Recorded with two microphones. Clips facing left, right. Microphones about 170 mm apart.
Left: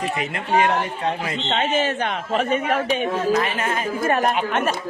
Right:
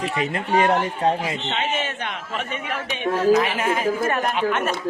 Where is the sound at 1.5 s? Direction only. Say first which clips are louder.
Left 8 dB; 35° left (ahead or behind).